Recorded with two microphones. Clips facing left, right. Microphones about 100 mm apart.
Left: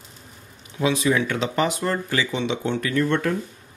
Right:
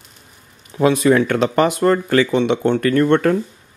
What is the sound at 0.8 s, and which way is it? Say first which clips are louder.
Speech: right 7 dB; 50° right (ahead or behind).